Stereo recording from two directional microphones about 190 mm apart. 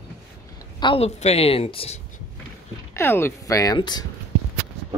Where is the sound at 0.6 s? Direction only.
25° left (ahead or behind).